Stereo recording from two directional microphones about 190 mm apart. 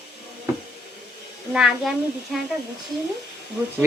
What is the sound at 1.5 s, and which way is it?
Speech, centre (ahead or behind).